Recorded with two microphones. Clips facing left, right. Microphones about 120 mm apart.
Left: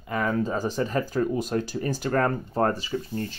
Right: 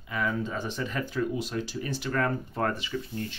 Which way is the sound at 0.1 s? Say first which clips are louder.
Left 5 dB; 45° left (ahead or behind).